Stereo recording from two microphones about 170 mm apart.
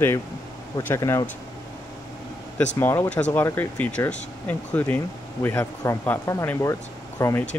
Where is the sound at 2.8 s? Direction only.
15° left (ahead or behind).